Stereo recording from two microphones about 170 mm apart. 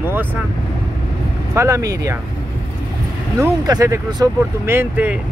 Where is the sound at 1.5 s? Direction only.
20° right (ahead or behind).